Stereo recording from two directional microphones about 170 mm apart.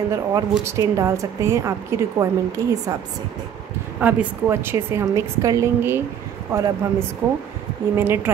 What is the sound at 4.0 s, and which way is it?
Speech, 10° right (ahead or behind).